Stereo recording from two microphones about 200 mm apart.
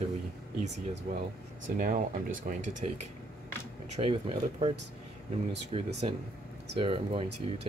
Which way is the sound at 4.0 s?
25° right (ahead or behind).